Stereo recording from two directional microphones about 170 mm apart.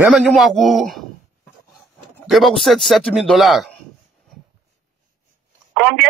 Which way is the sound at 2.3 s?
Centre (ahead or behind).